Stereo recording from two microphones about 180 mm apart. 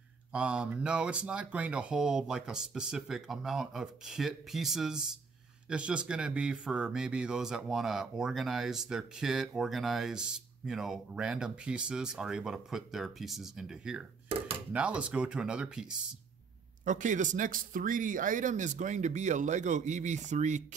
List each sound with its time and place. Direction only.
0.3 s speech: 5° right (ahead or behind)
16.8 s speech: 45° right (ahead or behind)